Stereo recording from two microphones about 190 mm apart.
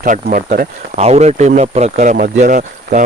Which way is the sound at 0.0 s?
45° right (ahead or behind).